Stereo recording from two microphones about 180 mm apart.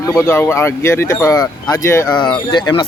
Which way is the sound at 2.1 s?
25° left (ahead or behind).